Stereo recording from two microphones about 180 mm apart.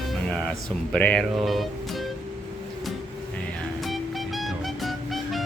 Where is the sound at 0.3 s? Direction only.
5° left (ahead or behind).